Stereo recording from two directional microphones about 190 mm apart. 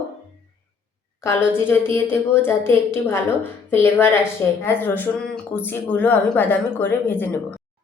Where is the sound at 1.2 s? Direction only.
15° left (ahead or behind).